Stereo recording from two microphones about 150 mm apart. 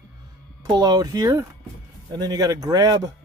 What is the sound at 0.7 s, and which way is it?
Speech, 25° right (ahead or behind).